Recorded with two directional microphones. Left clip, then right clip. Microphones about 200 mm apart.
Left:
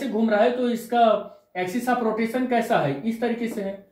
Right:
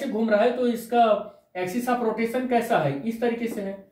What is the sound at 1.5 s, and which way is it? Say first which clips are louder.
Speech: left 2 dB; 20° right (ahead or behind).